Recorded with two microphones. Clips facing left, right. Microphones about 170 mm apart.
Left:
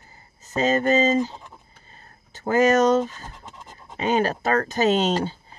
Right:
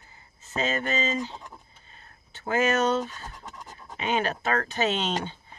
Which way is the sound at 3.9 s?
40° left (ahead or behind).